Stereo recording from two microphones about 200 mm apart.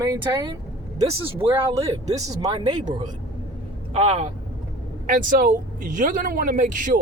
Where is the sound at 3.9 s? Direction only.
30° right (ahead or behind).